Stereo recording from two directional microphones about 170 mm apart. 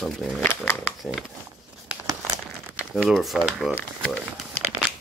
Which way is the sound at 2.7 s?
5° right (ahead or behind).